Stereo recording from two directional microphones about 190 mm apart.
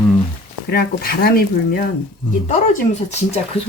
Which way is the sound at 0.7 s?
50° left (ahead or behind).